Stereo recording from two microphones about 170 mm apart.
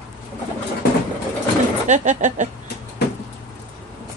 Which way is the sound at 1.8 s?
45° right (ahead or behind).